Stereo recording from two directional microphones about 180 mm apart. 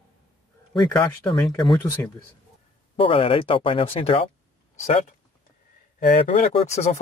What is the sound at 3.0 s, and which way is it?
Speech, 30° left (ahead or behind).